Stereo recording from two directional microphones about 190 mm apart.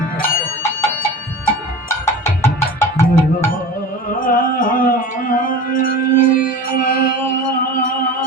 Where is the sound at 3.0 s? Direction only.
15° left (ahead or behind).